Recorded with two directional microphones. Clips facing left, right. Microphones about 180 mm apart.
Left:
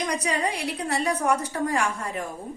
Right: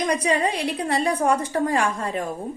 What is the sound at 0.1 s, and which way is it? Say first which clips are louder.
A woman's voice: right 5 dB; 30° right (ahead or behind).